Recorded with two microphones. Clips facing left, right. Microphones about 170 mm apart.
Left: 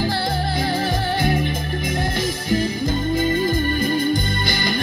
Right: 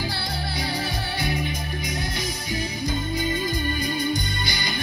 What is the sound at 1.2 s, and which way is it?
Music, 50° left (ahead or behind).